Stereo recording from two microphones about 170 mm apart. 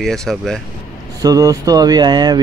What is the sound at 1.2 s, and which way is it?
Speech, 20° right (ahead or behind).